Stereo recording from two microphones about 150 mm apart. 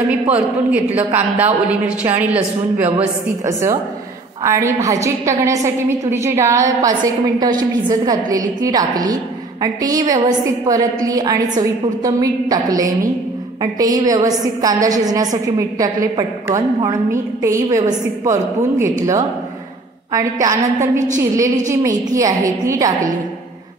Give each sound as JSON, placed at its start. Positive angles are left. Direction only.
{"t": 0.7, "sound": "a woman's voice", "side_deg": -10}